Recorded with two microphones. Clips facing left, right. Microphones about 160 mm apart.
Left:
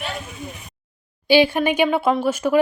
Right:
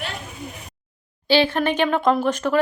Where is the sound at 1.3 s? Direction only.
10° left (ahead or behind).